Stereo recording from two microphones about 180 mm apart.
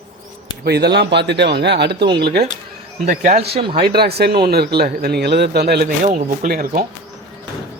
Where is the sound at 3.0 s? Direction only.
50° right (ahead or behind).